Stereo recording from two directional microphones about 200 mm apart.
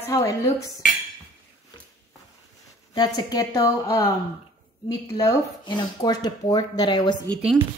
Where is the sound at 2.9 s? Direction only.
20° left (ahead or behind).